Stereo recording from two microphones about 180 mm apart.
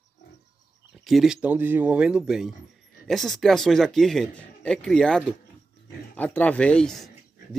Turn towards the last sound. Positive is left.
turn(degrees=5)  # may be behind; listen again after turning